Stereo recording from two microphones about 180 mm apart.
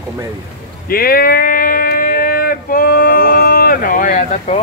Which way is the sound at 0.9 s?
55° left (ahead or behind).